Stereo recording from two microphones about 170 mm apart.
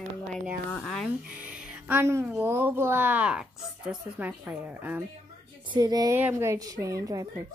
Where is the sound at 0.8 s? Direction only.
Centre (ahead or behind).